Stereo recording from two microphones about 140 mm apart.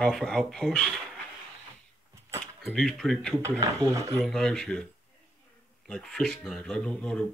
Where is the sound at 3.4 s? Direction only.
25° right (ahead or behind).